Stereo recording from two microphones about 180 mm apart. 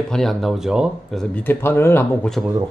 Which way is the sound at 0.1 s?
Centre (ahead or behind).